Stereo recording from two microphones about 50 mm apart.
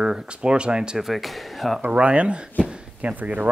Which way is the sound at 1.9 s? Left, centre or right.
Right.